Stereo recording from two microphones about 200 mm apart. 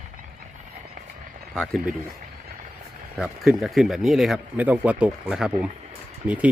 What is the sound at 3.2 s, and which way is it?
Speech, centre (ahead or behind).